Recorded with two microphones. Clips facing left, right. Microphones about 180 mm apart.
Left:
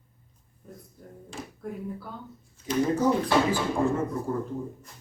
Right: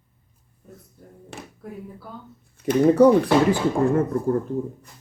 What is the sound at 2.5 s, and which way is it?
Speech, 65° right (ahead or behind).